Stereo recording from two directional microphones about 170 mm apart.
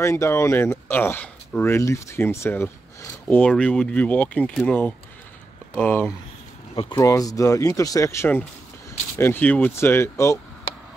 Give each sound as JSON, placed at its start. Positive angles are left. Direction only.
{"t": 0.0, "sound": "speech", "side_deg": 15}
{"t": 6.7, "sound": "speech", "side_deg": 30}